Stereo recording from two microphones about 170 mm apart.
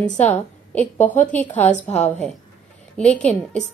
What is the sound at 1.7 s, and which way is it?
Speech, 40° left (ahead or behind).